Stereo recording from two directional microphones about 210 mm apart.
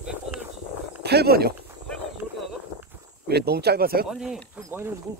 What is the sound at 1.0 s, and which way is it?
Speech, 50° right (ahead or behind).